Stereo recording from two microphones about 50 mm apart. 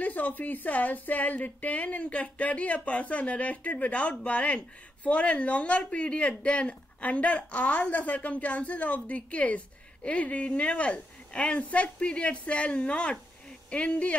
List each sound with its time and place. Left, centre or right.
0.0 s a woman's voice: left